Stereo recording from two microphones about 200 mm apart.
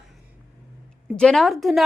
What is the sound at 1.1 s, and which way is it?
Speech, 5° left (ahead or behind).